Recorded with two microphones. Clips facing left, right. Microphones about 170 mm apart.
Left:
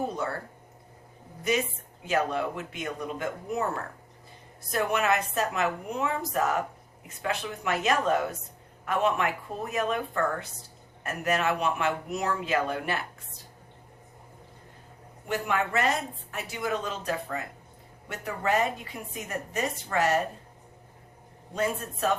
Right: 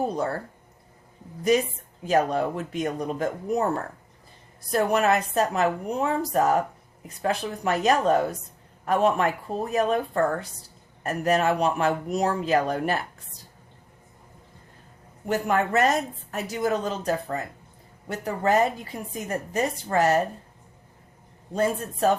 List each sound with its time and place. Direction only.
0.1 s speech: 35° right (ahead or behind)
2.0 s speech: 40° right (ahead or behind)
15.3 s speech: 40° right (ahead or behind)
21.5 s speech: 40° right (ahead or behind)